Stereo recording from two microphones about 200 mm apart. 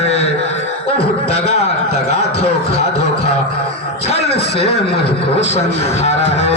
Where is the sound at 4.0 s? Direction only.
30° left (ahead or behind).